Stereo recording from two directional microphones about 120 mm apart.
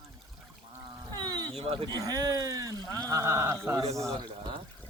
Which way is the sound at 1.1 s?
40° right (ahead or behind).